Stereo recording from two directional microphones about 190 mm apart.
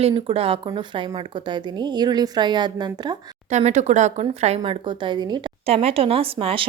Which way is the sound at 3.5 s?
35° right (ahead or behind).